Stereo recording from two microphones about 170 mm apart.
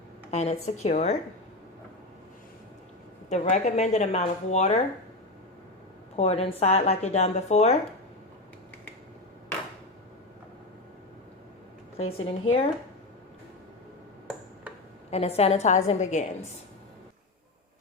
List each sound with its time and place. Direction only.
0.3 s speech: 40° left (ahead or behind)
3.2 s speech: 40° left (ahead or behind)
6.1 s speech: 35° left (ahead or behind)
11.9 s speech: 35° left (ahead or behind)
15.1 s speech: 35° left (ahead or behind)